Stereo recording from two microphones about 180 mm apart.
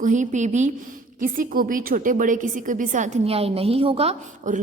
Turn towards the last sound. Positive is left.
turn(degrees=-35)  # may be behind; listen again after turning